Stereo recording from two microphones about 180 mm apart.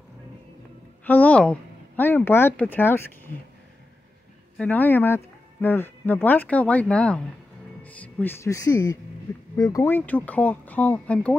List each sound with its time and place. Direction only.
1.0 s speech: 10° left (ahead or behind)
4.6 s speech: 10° left (ahead or behind)